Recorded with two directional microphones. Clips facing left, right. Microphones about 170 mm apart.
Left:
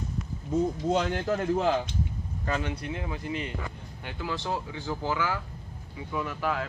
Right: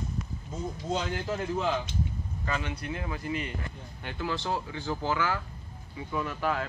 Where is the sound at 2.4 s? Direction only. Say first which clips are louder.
Left 3 dB; 45° left (ahead or behind).